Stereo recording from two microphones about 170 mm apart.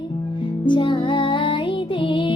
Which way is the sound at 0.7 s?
30° left (ahead or behind).